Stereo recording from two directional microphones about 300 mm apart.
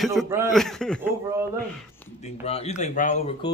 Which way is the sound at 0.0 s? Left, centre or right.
Centre.